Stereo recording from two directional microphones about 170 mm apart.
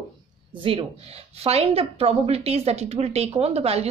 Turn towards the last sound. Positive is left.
turn(degrees=-35)  # may be behind; listen again after turning